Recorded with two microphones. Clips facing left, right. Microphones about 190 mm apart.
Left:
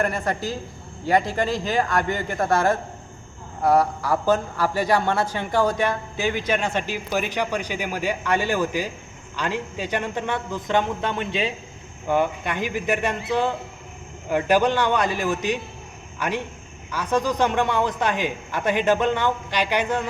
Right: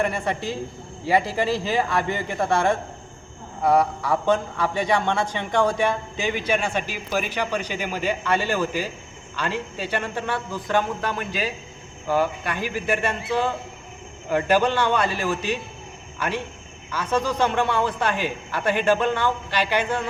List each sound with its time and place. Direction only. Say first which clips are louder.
0.0 s a man's voice: even; centre (ahead or behind)
5.8 s speech: even; 15° right (ahead or behind)
7.3 s a man's voice: left 1 dB; 15° left (ahead or behind)